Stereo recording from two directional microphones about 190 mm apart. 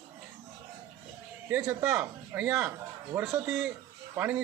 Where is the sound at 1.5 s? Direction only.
10° right (ahead or behind).